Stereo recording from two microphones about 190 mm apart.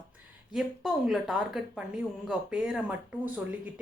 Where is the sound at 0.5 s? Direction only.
Centre (ahead or behind).